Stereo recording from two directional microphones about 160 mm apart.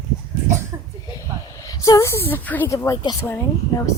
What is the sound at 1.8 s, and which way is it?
Speech, 20° left (ahead or behind).